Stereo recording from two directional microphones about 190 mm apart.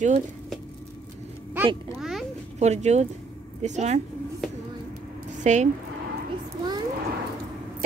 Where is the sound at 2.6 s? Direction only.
35° right (ahead or behind).